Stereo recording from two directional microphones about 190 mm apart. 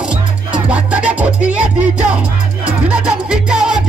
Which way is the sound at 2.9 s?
5° right (ahead or behind).